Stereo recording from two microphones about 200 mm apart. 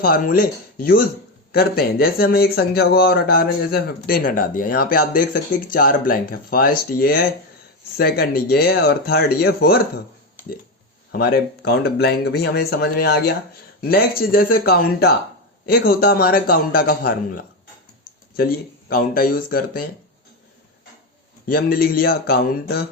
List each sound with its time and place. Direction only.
0.0 s speech: 50° left (ahead or behind)
11.1 s speech: 50° left (ahead or behind)
21.4 s speech: 50° left (ahead or behind)